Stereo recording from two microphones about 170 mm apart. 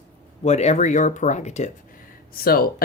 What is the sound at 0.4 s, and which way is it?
Speech, 40° left (ahead or behind).